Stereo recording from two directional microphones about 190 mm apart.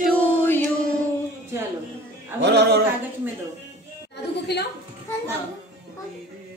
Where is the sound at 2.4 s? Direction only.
60° right (ahead or behind).